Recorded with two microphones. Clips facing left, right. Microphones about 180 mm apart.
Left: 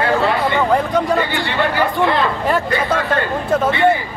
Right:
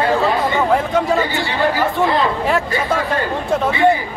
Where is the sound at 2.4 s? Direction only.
Centre (ahead or behind).